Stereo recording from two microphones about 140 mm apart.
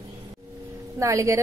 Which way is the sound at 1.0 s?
20° right (ahead or behind).